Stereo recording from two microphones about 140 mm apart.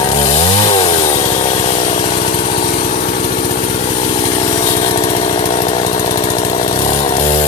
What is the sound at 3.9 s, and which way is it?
Chainsaw, 45° left (ahead or behind).